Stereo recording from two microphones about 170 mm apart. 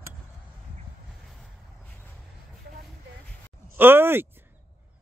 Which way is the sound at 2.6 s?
75° right (ahead or behind).